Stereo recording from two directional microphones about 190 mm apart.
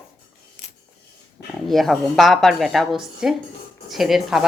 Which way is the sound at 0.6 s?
45° left (ahead or behind).